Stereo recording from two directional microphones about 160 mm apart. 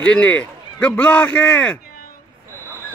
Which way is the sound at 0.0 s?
10° left (ahead or behind).